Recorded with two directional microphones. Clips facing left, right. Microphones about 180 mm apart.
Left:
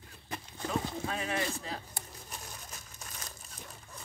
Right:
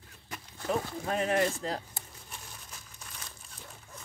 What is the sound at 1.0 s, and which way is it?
Speech, 45° right (ahead or behind).